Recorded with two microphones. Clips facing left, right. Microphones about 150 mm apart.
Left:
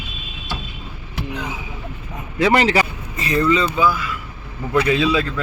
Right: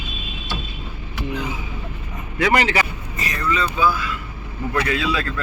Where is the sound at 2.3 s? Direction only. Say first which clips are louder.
Left 3 dB; 30° left (ahead or behind).